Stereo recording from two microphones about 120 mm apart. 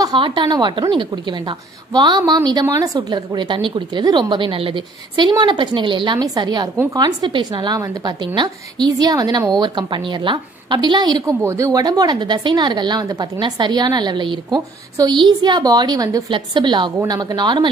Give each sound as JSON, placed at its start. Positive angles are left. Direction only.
{"t": 0.0, "sound": "a woman's voice", "side_deg": -40}
{"t": 16.3, "sound": "a woman's voice", "side_deg": -40}